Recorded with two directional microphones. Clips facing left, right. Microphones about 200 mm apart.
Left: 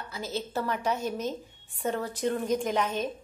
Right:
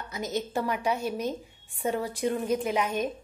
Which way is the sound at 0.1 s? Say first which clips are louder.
Right 3 dB; 15° right (ahead or behind).